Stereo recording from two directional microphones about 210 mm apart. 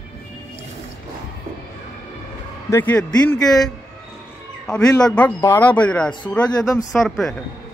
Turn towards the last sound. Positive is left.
turn(degrees=0)  # may be behind; listen again after turning